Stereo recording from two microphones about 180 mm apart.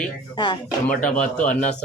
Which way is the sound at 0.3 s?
25° left (ahead or behind).